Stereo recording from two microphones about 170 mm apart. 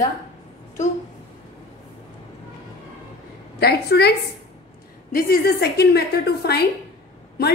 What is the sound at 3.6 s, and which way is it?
Speech, 70° left (ahead or behind).